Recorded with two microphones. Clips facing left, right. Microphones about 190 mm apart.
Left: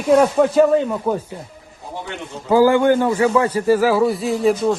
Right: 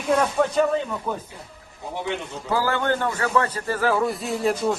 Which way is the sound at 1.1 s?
45° left (ahead or behind).